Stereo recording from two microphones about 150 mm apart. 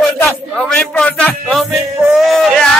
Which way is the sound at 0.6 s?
5° left (ahead or behind).